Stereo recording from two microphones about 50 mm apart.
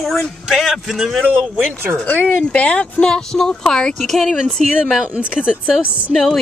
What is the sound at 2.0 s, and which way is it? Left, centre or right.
Speech, left.